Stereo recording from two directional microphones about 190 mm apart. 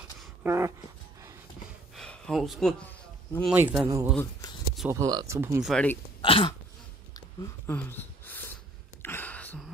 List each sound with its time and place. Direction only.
0.4 s speech: 15° right (ahead or behind)
2.0 s a sound: 5° left (ahead or behind)
3.4 s speech: 10° right (ahead or behind)
5.6 s speech: 5° left (ahead or behind)
6.2 s throat clearing: 30° left (ahead or behind)
7.2 s a sound: 10° left (ahead or behind)